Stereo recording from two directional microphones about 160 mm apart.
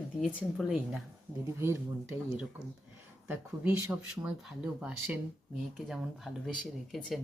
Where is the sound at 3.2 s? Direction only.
10° right (ahead or behind).